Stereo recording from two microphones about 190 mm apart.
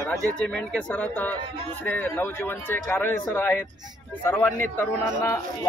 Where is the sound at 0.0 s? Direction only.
5° left (ahead or behind).